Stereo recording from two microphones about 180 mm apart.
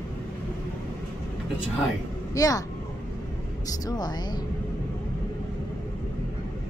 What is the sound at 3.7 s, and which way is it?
Speech, 20° left (ahead or behind).